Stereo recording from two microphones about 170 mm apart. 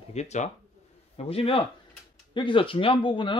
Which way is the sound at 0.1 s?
40° left (ahead or behind).